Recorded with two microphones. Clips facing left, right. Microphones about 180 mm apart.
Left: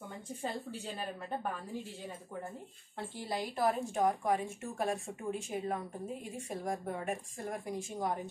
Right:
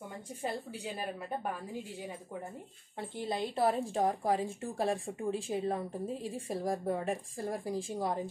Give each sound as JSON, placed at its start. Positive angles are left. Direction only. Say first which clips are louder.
{"t": 0.4, "sound": "a woman's voice", "louder": "right 2 dB", "side_deg": -10}
{"t": 3.3, "sound": "a woman's voice", "louder": "right 2 dB", "side_deg": -30}